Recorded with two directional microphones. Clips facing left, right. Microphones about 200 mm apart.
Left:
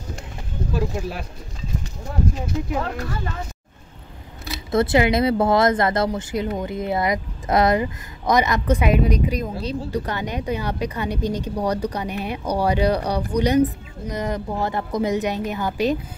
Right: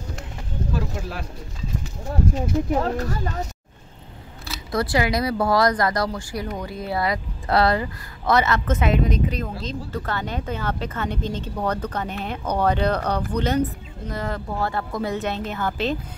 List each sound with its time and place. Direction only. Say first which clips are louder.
2.7 s speech: right 3 dB; 40° right (ahead or behind)
4.5 s speech: left 5 dB; 25° left (ahead or behind)